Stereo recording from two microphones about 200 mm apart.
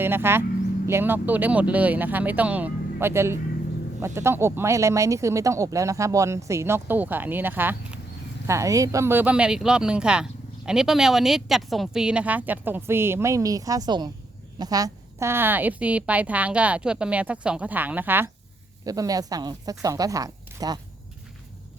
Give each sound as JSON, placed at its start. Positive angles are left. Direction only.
{"t": 0.0, "sound": "speech", "side_deg": -10}